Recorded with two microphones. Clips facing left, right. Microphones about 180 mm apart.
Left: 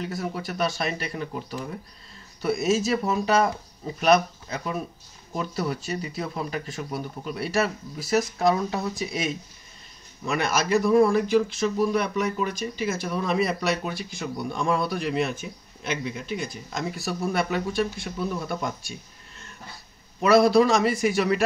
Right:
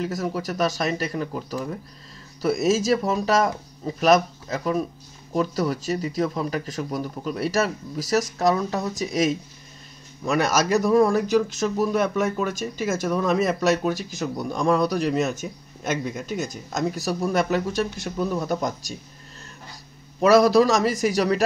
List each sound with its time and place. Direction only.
0.0 s speech: 40° right (ahead or behind)
20.2 s speech: 40° right (ahead or behind)